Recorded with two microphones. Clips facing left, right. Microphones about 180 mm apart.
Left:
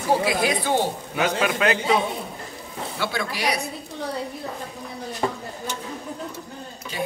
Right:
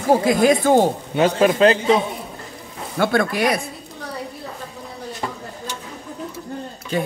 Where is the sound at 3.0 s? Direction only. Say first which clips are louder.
Right 9 dB; 50° right (ahead or behind).